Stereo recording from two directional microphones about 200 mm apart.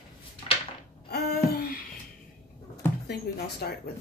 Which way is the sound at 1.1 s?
50° left (ahead or behind).